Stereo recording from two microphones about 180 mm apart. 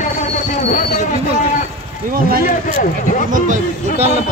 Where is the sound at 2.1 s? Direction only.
55° right (ahead or behind).